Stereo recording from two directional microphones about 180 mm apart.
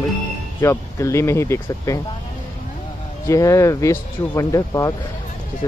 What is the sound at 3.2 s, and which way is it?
Speech, 15° left (ahead or behind).